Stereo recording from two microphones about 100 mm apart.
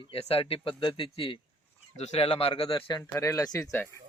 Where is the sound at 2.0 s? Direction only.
75° left (ahead or behind); by 3.0 s 55° left (ahead or behind).